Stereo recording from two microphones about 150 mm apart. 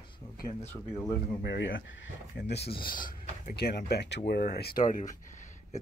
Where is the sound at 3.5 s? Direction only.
90° left; by 5.8 s 55° left (ahead or behind).